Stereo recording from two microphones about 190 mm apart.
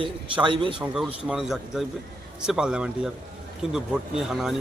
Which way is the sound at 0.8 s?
5° right (ahead or behind).